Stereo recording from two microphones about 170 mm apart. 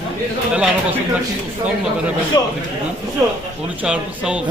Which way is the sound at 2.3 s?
20° left (ahead or behind).